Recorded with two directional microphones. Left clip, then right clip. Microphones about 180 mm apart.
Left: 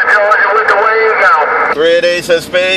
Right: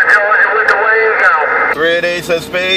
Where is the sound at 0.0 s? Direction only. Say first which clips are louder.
Even; 45° left (ahead or behind).